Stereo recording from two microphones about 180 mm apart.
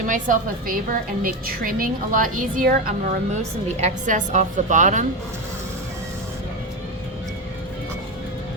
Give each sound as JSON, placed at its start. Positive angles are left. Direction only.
{"t": 0.1, "sound": "a woman's voice", "side_deg": -50}